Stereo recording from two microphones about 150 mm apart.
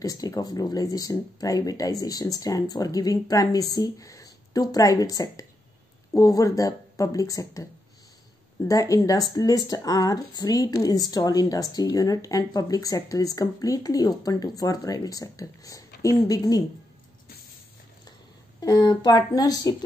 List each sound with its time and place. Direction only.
0.0 s speech: 25° left (ahead or behind)
8.6 s speech: 20° left (ahead or behind)
18.6 s speech: 25° left (ahead or behind)